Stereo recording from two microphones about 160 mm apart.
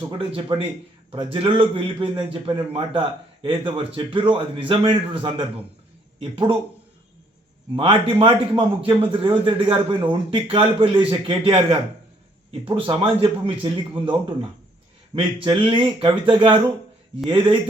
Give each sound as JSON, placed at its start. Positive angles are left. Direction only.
{"t": 0.2, "sound": "a man's voice", "side_deg": -35}
{"t": 7.8, "sound": "a man's voice", "side_deg": -35}